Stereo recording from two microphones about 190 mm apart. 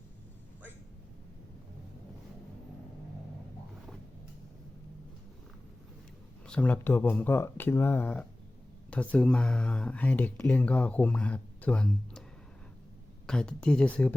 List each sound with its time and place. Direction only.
6.5 s speech: 10° left (ahead or behind)
13.2 s speech: 5° left (ahead or behind)